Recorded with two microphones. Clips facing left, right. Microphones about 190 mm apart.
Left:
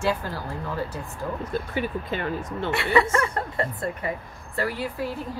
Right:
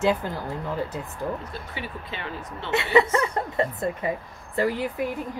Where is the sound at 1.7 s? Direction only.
45° left (ahead or behind).